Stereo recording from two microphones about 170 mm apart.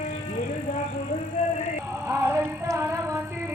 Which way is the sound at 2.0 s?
15° right (ahead or behind).